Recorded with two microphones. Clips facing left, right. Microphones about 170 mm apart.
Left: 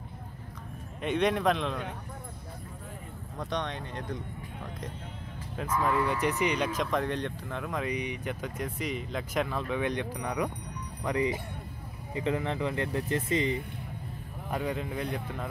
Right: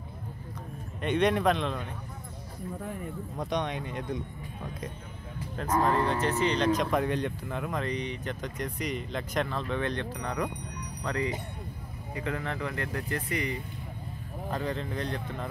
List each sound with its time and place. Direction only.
1.0 s speech: centre (ahead or behind)
3.3 s speech: 15° right (ahead or behind)
5.7 s speech: 35° right (ahead or behind)
6.2 s speech: 10° left (ahead or behind)
6.8 s speech: 5° right (ahead or behind)
7.8 s speech: 10° left (ahead or behind)
14.5 s speech: 10° left (ahead or behind)